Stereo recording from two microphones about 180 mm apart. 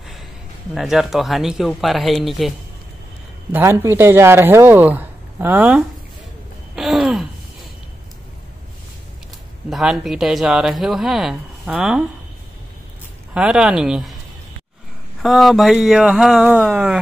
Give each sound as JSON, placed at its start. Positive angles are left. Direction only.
{"t": 0.7, "sound": "speech", "side_deg": 0}
{"t": 3.5, "sound": "speech", "side_deg": -15}
{"t": 6.7, "sound": "a sound", "side_deg": 0}
{"t": 9.7, "sound": "speech", "side_deg": 0}
{"t": 13.3, "sound": "speech", "side_deg": -5}
{"t": 15.2, "sound": "speech", "side_deg": 0}